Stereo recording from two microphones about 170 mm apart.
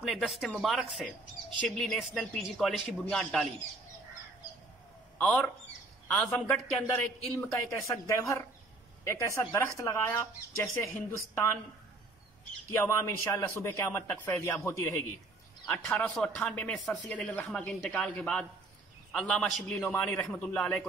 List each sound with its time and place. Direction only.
0.0 s speech: centre (ahead or behind)
5.2 s a man's voice: 10° left (ahead or behind)
12.7 s a man's voice: 15° left (ahead or behind)